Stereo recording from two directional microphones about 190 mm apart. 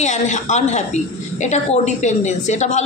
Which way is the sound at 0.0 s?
40° left (ahead or behind).